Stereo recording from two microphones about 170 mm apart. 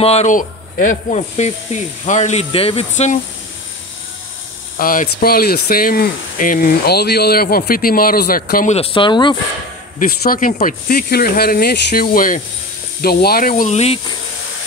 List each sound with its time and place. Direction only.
0.0 s speech: 40° left (ahead or behind)
1.3 s speech: 40° left (ahead or behind)
4.7 s speech: 55° left (ahead or behind)
8.7 s speech: 35° left (ahead or behind)
9.9 s speech: 55° left (ahead or behind)
13.0 s speech: 65° left (ahead or behind); by 13.9 s 40° left (ahead or behind)